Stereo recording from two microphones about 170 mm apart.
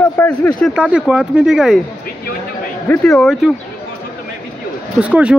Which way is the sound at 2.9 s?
5° left (ahead or behind).